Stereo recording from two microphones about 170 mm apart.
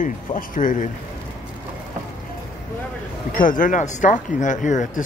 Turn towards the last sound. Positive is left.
turn(degrees=45)  # may be behind; listen again after turning